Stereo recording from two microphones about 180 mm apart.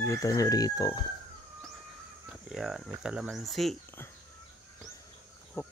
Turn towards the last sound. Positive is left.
turn(degrees=15)  # may be behind; listen again after turning